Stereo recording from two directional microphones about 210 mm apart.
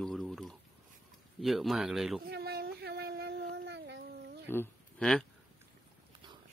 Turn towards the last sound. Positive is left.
turn(degrees=5)  # may be behind; listen again after turning